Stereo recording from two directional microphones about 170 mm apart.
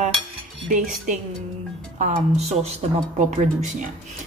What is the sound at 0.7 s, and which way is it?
Speech, 50° right (ahead or behind).